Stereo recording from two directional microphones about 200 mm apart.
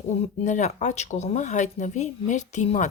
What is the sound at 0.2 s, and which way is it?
Speech, 35° left (ahead or behind).